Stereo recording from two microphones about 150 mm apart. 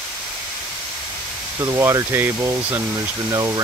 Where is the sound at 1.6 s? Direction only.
20° right (ahead or behind).